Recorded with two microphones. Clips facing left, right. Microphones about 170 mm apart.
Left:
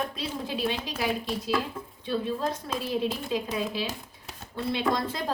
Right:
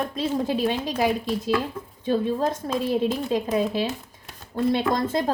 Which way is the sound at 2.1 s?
45° right (ahead or behind).